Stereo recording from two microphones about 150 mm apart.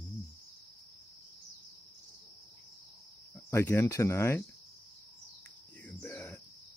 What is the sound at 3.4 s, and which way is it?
Speech, 15° left (ahead or behind).